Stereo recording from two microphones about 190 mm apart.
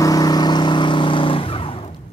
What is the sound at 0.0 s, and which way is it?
Vehicle, 20° left (ahead or behind).